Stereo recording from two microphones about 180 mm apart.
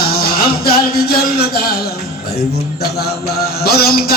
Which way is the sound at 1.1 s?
60° left (ahead or behind).